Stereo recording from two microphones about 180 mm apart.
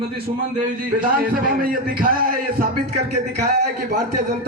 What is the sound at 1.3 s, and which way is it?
A man's voice, 50° right (ahead or behind).